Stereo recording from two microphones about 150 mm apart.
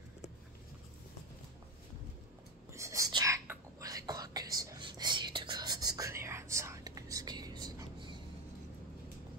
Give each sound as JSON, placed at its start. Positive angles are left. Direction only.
{"t": 2.7, "sound": "whispering", "side_deg": -20}